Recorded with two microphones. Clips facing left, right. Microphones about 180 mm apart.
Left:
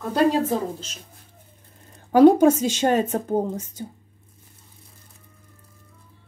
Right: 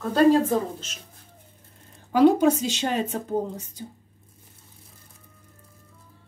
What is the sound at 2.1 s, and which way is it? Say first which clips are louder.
Speech: left 4 dB; 45° left (ahead or behind).